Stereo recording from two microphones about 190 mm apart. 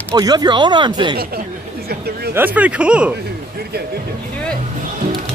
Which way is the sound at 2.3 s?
10° right (ahead or behind).